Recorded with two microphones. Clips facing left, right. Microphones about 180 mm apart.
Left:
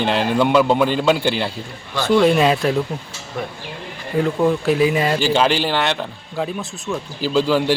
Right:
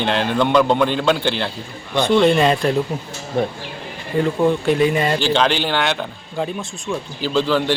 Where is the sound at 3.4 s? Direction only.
30° right (ahead or behind).